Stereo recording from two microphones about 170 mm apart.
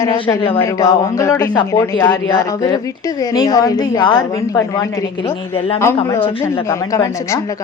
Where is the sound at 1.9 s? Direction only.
15° left (ahead or behind).